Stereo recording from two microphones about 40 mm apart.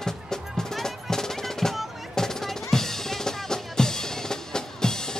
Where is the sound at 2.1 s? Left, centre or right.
Centre.